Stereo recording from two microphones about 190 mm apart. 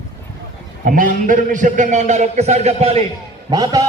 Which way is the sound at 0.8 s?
45° right (ahead or behind).